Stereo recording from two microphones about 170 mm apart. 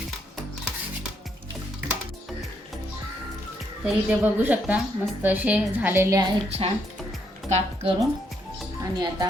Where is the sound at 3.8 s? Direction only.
5° right (ahead or behind).